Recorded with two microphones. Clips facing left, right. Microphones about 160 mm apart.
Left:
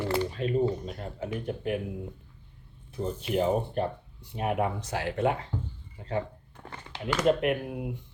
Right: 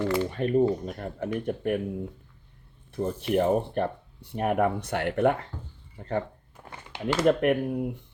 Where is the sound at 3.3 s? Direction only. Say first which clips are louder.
Right 2 dB; 55° right (ahead or behind).